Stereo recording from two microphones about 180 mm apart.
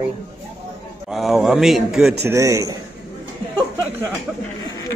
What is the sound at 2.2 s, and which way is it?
Speech, 15° right (ahead or behind).